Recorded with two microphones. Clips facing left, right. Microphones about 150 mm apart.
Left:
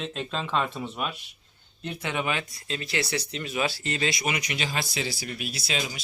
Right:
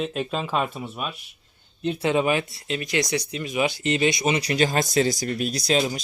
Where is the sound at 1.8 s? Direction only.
25° right (ahead or behind).